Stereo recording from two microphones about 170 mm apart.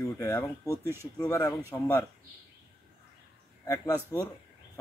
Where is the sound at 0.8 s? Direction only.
15° right (ahead or behind).